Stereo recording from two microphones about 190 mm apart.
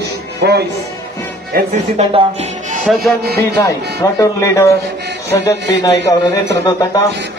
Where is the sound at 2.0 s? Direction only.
35° right (ahead or behind).